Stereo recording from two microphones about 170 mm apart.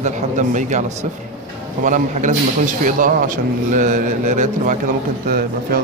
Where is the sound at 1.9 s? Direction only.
50° right (ahead or behind).